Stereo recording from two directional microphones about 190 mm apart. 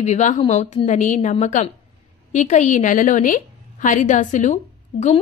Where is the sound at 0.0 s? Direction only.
35° left (ahead or behind).